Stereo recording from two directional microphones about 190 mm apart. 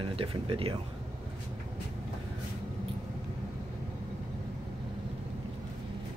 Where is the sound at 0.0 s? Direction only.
30° right (ahead or behind).